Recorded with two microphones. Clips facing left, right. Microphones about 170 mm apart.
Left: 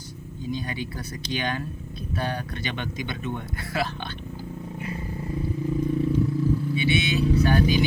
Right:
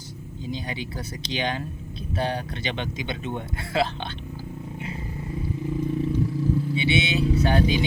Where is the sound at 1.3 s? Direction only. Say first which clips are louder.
Right 1 dB; 20° right (ahead or behind).